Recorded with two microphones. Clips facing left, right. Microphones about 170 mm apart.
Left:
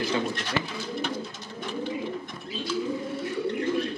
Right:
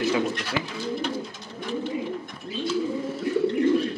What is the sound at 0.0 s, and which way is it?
Speech, 5° right (ahead or behind).